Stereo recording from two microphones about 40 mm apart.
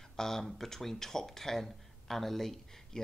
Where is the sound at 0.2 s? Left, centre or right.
Centre.